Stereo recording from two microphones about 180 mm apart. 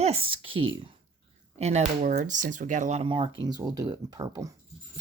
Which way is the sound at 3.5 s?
20° right (ahead or behind).